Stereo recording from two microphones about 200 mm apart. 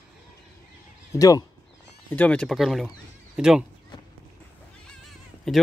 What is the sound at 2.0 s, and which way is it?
Speech, 5° left (ahead or behind).